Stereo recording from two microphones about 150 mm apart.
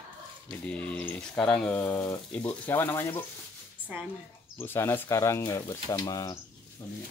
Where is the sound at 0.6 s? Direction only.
10° left (ahead or behind).